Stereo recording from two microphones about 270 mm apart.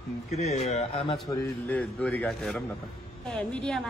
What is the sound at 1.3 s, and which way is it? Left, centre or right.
A woman's voice, centre.